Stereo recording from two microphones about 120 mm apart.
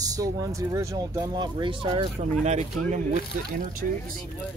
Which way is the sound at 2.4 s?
75° right (ahead or behind).